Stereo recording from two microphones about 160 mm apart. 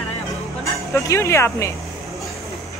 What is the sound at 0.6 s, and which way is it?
Speech, 20° left (ahead or behind).